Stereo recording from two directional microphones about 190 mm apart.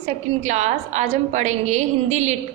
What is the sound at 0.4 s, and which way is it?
A woman's voice, 35° right (ahead or behind).